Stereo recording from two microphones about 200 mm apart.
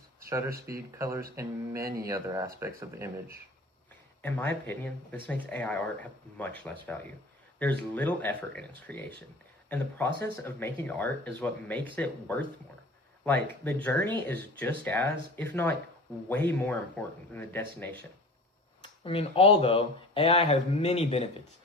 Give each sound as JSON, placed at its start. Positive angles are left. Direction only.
{"t": 0.3, "sound": "speech", "side_deg": -15}
{"t": 4.2, "sound": "speech", "side_deg": 10}
{"t": 13.2, "sound": "speech", "side_deg": 10}
{"t": 18.8, "sound": "speech", "side_deg": 30}